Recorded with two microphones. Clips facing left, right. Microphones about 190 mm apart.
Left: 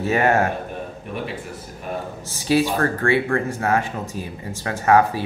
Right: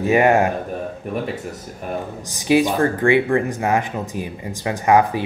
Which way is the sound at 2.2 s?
15° right (ahead or behind).